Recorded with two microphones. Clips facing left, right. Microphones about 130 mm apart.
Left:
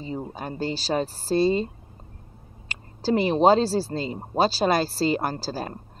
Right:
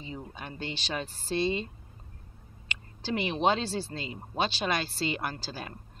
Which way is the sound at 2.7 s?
35° left (ahead or behind).